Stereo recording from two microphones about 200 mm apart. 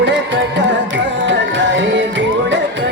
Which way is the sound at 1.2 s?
65° right (ahead or behind).